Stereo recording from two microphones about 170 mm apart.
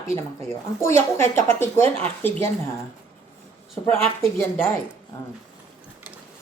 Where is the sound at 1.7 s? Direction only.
40° right (ahead or behind).